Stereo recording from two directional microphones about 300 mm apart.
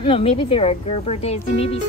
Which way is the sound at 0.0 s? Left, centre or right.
Centre.